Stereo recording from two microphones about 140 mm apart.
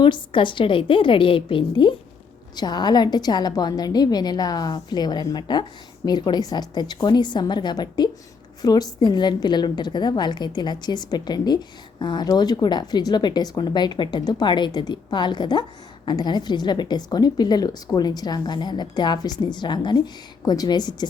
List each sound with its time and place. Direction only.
0.0 s a woman's voice: 35° left (ahead or behind)